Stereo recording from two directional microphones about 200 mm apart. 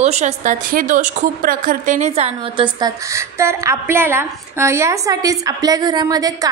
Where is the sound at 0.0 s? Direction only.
35° right (ahead or behind).